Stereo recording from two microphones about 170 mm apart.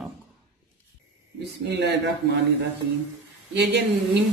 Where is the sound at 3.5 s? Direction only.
85° right.